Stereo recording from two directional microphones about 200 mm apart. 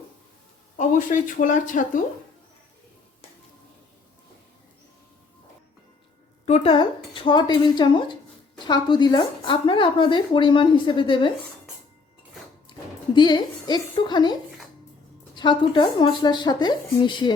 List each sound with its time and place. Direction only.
0.8 s speech: 40° left (ahead or behind)
6.4 s speech: 30° left (ahead or behind)
13.1 s speech: 20° left (ahead or behind)
15.4 s speech: 25° left (ahead or behind)